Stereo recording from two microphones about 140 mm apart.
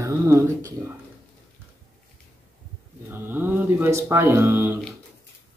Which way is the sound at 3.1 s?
15° right (ahead or behind).